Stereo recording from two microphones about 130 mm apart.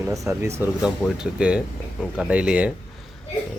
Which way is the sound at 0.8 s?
Centre (ahead or behind).